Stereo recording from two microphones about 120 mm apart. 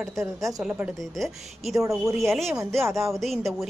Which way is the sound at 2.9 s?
25° right (ahead or behind).